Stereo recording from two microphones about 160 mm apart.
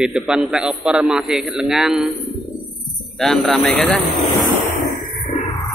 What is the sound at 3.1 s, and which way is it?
Speech, centre (ahead or behind).